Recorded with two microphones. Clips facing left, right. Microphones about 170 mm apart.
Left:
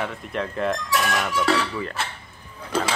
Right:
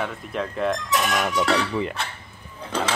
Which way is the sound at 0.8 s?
20° right (ahead or behind).